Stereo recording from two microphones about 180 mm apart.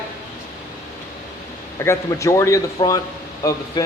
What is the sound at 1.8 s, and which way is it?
Speech, 15° left (ahead or behind).